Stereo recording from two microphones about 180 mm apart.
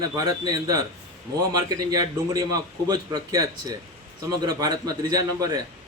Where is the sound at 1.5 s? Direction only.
20° right (ahead or behind).